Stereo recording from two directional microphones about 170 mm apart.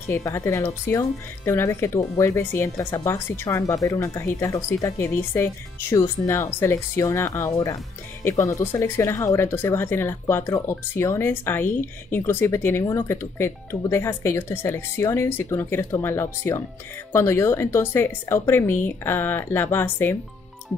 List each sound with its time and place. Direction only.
0.1 s speech: 20° left (ahead or behind)